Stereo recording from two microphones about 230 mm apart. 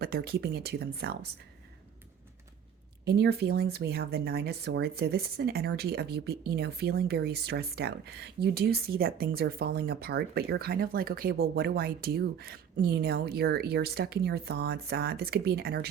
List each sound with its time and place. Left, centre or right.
0.0 s speech: right
3.0 s speech: right